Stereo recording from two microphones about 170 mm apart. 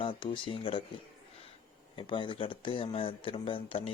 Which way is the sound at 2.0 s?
30° left (ahead or behind).